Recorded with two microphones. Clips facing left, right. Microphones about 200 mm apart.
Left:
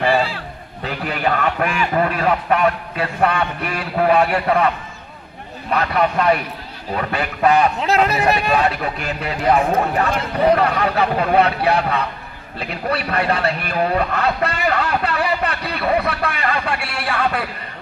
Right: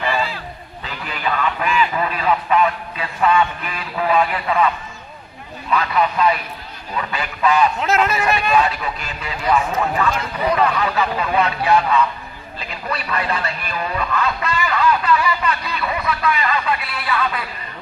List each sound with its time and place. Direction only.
0.8 s a man's voice: 60° left (ahead or behind)
3.9 s a man's voice: 50° left (ahead or behind)
7.8 s speech: 35° left (ahead or behind)
8.5 s a man's voice: 60° left (ahead or behind)